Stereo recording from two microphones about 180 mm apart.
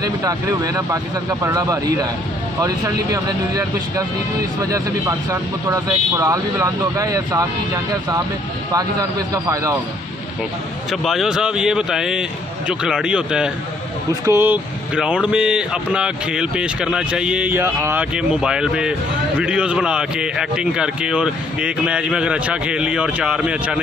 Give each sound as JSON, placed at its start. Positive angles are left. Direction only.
{"t": 0.0, "sound": "speech", "side_deg": -20}
{"t": 4.6, "sound": "a man's voice", "side_deg": -15}
{"t": 9.3, "sound": "speech", "side_deg": -20}
{"t": 10.9, "sound": "speech", "side_deg": 0}